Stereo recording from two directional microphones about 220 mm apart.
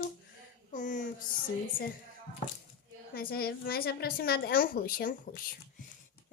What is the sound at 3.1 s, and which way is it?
A woman's voice, 40° left (ahead or behind).